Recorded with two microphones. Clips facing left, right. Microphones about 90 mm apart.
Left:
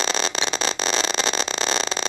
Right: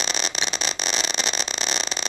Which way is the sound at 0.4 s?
25° left (ahead or behind).